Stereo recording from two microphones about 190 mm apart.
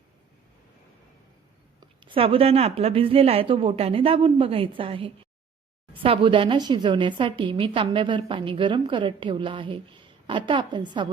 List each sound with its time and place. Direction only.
2.0 s a woman's voice: 30° right (ahead or behind)